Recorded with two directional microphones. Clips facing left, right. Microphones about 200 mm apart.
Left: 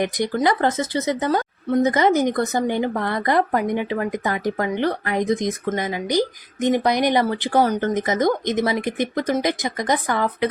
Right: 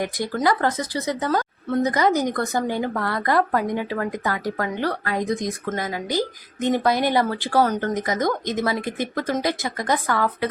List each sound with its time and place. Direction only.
0.0 s a woman's voice: 20° left (ahead or behind)